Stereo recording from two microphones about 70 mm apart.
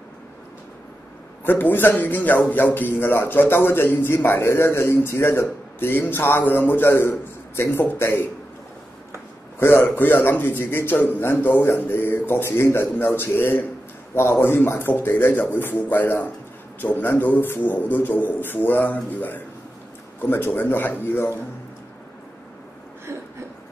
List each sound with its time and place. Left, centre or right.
1.4 s a man's voice: left
9.6 s a man's voice: left